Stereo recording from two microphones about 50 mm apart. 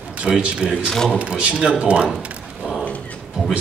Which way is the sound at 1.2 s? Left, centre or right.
Right.